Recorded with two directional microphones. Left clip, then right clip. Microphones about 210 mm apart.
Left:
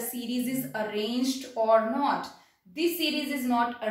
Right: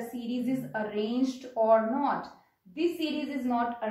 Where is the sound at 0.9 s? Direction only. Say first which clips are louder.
Even; 25° left (ahead or behind).